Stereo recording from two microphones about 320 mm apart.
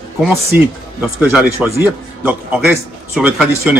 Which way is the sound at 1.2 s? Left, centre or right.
Centre.